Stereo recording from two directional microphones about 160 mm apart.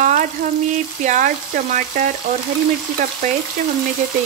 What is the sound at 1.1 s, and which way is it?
Speech, 55° right (ahead or behind).